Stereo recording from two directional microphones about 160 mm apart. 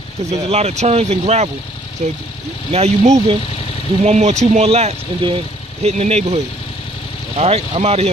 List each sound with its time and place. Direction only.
0.3 s speech: 45° right (ahead or behind)